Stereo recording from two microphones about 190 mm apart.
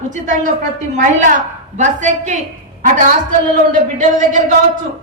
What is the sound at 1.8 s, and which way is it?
Speech, 40° right (ahead or behind).